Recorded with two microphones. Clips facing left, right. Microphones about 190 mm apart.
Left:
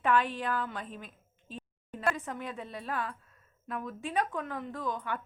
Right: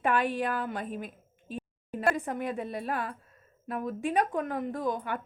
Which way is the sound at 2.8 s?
45° right (ahead or behind).